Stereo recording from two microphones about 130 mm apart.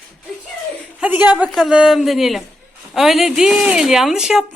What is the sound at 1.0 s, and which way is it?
A woman's voice, 10° right (ahead or behind).